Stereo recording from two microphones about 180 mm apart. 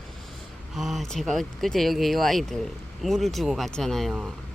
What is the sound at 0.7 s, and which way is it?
Speech, centre (ahead or behind).